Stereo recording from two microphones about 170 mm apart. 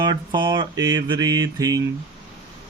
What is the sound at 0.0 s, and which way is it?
Speech, 25° right (ahead or behind).